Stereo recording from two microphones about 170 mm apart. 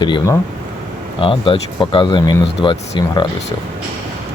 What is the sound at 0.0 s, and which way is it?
Speech, 30° left (ahead or behind).